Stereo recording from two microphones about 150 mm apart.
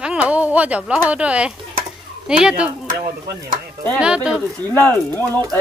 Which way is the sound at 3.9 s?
5° right (ahead or behind).